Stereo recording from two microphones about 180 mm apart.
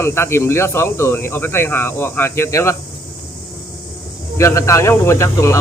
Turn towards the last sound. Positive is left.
turn(degrees=15)  # may be behind; listen again after turning